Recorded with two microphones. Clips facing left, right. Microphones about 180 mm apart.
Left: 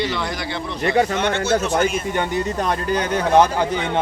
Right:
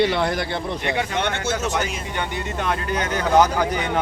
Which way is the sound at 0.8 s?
40° left (ahead or behind).